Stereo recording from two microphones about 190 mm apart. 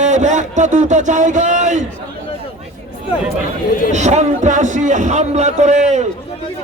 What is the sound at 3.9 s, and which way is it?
Speech, 35° right (ahead or behind).